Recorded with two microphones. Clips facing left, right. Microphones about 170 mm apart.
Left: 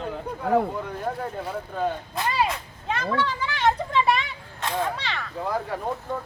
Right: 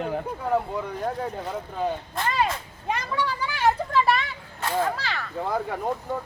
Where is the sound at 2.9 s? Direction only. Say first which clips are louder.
Left 2 dB; 15° right (ahead or behind).